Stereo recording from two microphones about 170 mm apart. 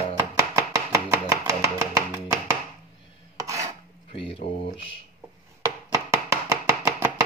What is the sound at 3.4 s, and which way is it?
Cutlery, 20° right (ahead or behind).